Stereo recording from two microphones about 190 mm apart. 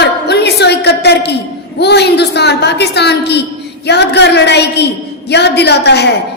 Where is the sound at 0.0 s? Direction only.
60° left (ahead or behind).